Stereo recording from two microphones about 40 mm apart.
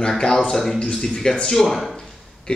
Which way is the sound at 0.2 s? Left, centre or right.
Left.